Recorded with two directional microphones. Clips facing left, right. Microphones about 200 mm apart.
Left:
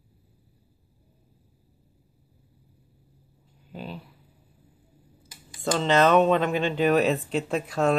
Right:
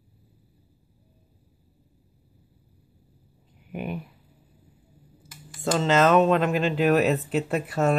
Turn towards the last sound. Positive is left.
turn(degrees=-5)  # may be behind; listen again after turning